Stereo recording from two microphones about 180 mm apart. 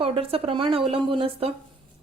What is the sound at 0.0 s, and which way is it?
A woman's voice, 30° right (ahead or behind).